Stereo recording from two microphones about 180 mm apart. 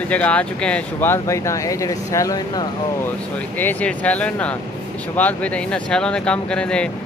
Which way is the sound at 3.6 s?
10° left (ahead or behind).